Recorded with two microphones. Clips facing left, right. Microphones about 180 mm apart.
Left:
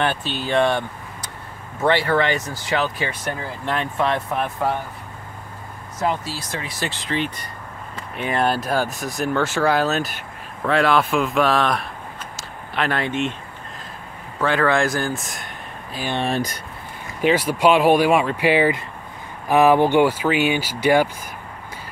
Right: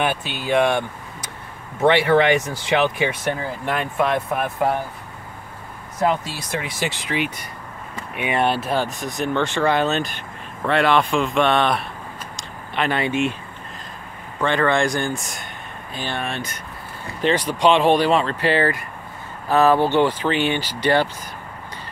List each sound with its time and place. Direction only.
0.0 s speech: 10° right (ahead or behind)
6.2 s speech: 20° right (ahead or behind); by 11.9 s centre (ahead or behind)
12.4 s a sound: centre (ahead or behind)
14.4 s speech: 5° left (ahead or behind)
16.3 s speech: 35° left (ahead or behind)
17.2 s speech: 10° left (ahead or behind)